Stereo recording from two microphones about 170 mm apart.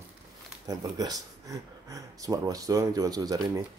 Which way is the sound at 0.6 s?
20° right (ahead or behind).